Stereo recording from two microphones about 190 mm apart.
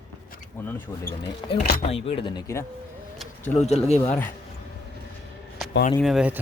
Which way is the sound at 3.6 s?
35° left (ahead or behind).